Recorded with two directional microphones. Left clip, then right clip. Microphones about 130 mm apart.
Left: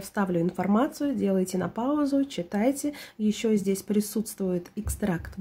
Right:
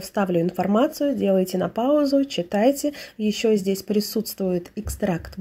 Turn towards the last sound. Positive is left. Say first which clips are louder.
# right 5 dB
turn(degrees=-10)  # may be behind; listen again after turning